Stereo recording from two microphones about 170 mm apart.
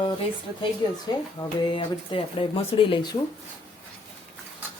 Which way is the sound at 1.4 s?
25° left (ahead or behind).